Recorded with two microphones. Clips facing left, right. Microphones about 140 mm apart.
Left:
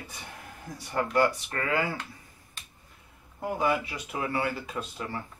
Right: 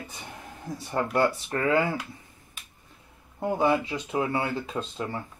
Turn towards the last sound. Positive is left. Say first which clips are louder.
# right 3 dB
turn(degrees=-25)  # may be behind; listen again after turning